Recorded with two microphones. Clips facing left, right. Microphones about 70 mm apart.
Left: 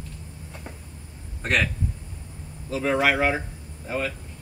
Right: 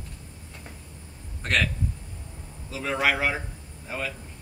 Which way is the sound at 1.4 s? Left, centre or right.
Centre.